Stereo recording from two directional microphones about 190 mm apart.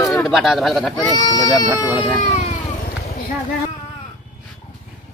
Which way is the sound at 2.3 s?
35° left (ahead or behind).